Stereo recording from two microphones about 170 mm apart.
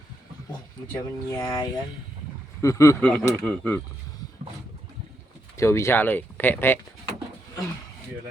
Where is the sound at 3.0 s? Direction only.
5° left (ahead or behind).